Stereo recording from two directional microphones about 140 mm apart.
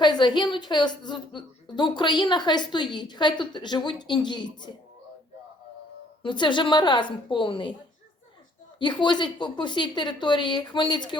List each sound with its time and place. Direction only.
0.0 s a woman's voice: 30° left (ahead or behind)
6.2 s a woman's voice: 35° left (ahead or behind)
8.8 s a woman's voice: 35° left (ahead or behind)